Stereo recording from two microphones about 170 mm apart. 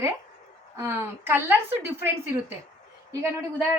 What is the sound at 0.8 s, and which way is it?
Speech, 15° right (ahead or behind).